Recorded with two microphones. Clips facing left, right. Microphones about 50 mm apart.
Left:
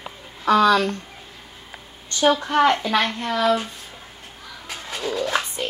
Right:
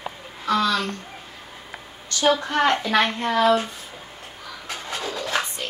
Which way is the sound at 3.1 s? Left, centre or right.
Right.